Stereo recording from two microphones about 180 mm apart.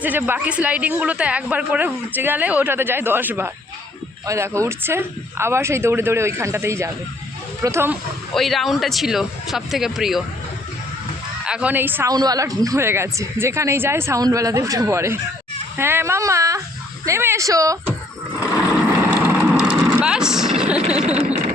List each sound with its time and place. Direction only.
0.0 s a woman's voice: 10° right (ahead or behind)
8.3 s speech: centre (ahead or behind)
11.4 s a woman's voice: 5° right (ahead or behind)
19.1 s vehicle: 10° right (ahead or behind)
20.8 s a sound: 35° right (ahead or behind)